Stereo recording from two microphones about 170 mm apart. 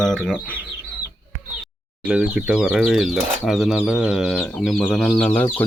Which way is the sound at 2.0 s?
5° right (ahead or behind).